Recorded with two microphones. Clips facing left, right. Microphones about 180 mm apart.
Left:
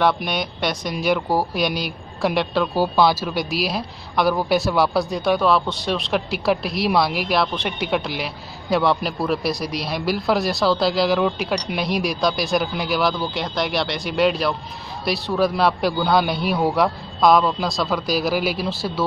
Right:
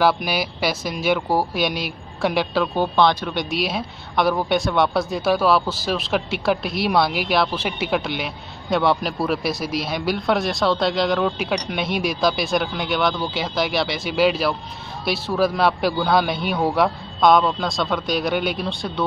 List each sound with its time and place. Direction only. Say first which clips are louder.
0.0 s speech: right 1 dB; 5° right (ahead or behind)